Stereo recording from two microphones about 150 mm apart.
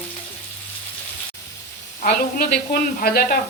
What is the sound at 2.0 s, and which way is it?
A woman's voice, 85° left.